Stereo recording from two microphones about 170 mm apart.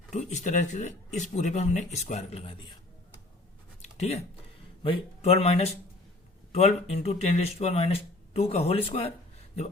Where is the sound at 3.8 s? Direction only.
40° left (ahead or behind).